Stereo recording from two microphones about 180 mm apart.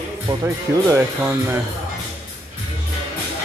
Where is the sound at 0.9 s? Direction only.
10° right (ahead or behind).